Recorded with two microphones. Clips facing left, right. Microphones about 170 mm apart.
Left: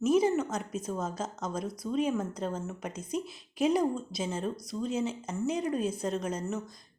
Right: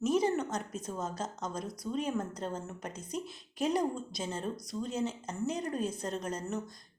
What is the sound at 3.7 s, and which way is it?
Speech, 5° left (ahead or behind).